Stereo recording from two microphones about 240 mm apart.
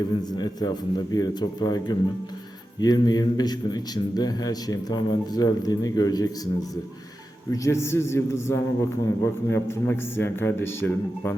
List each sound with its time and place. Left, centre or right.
0.3 s speech: centre